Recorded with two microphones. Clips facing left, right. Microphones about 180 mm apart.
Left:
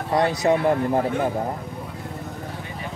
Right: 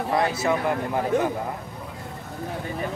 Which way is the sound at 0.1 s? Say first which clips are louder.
Left 4 dB; 35° left (ahead or behind).